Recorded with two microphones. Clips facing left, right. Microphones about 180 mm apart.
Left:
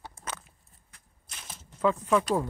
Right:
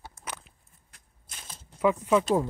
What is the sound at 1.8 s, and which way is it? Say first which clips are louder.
Speech: right 2 dB; 15° right (ahead or behind).